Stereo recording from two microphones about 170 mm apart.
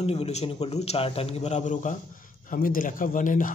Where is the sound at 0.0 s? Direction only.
35° left (ahead or behind).